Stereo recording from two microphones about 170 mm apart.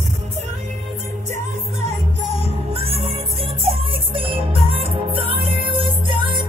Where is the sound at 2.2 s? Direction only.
40° right (ahead or behind).